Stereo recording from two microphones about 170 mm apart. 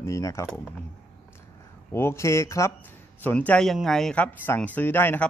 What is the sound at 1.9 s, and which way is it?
Speech, 15° left (ahead or behind).